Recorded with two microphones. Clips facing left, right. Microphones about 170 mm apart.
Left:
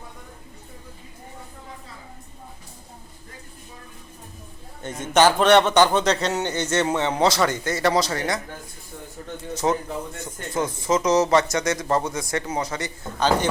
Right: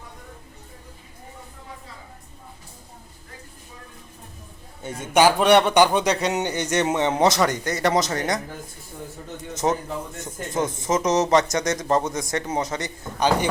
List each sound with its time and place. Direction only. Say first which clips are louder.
4.8 s a man's voice: even; 10° right (ahead or behind)
9.6 s speech: even; 25° right (ahead or behind)